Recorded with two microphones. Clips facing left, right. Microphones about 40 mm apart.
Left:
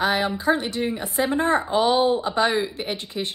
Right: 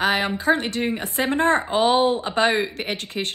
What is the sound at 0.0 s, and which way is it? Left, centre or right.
A woman's voice, right.